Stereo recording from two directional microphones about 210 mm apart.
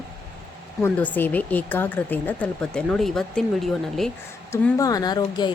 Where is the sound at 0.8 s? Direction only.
10° left (ahead or behind).